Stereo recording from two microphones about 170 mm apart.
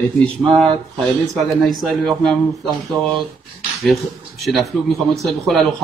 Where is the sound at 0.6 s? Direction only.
Centre (ahead or behind).